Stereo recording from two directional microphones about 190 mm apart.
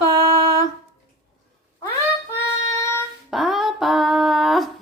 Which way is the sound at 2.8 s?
15° left (ahead or behind).